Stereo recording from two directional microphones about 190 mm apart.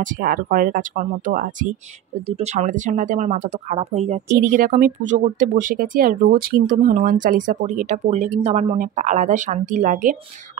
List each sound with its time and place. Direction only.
0.0 s speech: 45° right (ahead or behind)
4.4 s speech: 45° right (ahead or behind)